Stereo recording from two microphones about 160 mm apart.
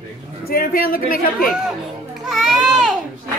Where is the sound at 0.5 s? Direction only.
65° left (ahead or behind).